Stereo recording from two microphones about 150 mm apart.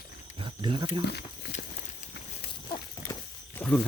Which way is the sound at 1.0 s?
90° left.